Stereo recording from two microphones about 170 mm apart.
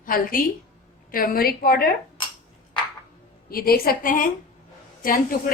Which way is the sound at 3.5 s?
60° left (ahead or behind).